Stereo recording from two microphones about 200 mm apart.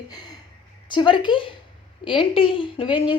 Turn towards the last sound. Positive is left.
turn(degrees=25)  # may be behind; listen again after turning